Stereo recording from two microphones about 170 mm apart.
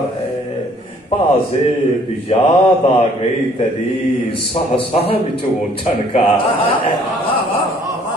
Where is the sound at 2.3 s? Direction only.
35° left (ahead or behind).